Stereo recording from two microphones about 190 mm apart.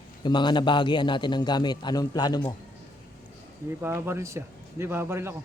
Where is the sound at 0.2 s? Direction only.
25° left (ahead or behind).